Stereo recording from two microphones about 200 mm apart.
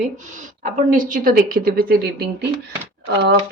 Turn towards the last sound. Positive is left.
turn(degrees=-55)  # may be behind; listen again after turning